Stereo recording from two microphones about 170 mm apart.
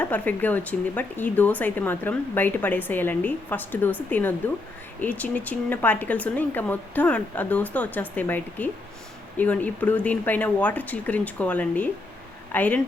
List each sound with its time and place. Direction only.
0.0 s speech: 10° left (ahead or behind)